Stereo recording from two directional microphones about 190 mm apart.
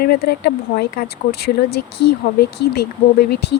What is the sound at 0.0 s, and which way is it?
Speech, 55° left (ahead or behind).